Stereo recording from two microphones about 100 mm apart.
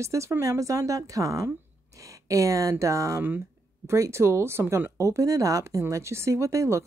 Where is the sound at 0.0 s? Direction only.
30° right (ahead or behind).